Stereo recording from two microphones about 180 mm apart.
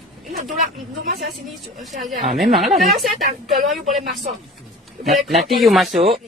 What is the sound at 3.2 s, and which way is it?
Speech, 45° right (ahead or behind).